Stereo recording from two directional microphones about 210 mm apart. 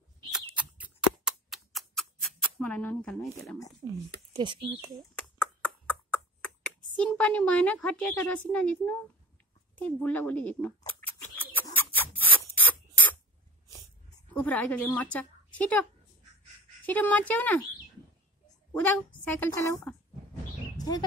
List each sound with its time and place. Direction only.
0.3 s a sound: 5° right (ahead or behind)
4.3 s speech: 20° right (ahead or behind)
5.1 s a sound: 5° left (ahead or behind)
6.4 s speech: 5° left (ahead or behind)
10.8 s scissors: 10° left (ahead or behind)
14.3 s speech: 10° left (ahead or behind)
18.7 s speech: 10° left (ahead or behind)